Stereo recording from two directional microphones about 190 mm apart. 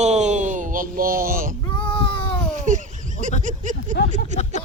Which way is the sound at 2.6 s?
40° right (ahead or behind).